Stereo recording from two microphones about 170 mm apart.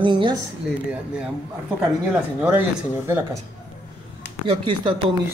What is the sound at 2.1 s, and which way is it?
Speech, 10° right (ahead or behind).